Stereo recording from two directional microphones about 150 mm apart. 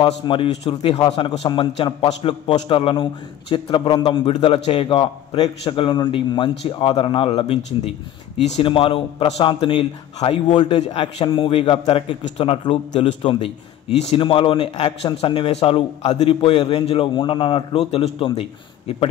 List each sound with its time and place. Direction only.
0.0 s a man's voice: 35° left (ahead or behind)
10.7 s a man's voice: 45° left (ahead or behind)
11.1 s a man's voice: 35° left (ahead or behind)